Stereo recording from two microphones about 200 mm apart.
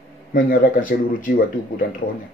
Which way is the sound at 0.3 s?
40° left (ahead or behind).